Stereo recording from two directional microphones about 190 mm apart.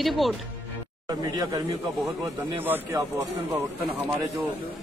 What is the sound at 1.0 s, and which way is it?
Speech, 20° right (ahead or behind).